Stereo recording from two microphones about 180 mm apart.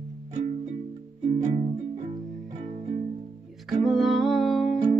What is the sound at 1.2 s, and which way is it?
Music, 35° right (ahead or behind).